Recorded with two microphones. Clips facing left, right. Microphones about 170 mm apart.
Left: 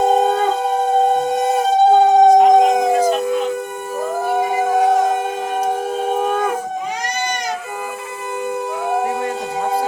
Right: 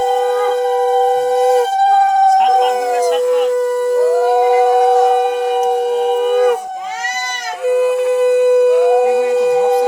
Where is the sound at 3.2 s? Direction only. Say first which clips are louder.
Right 7 dB; 80° right.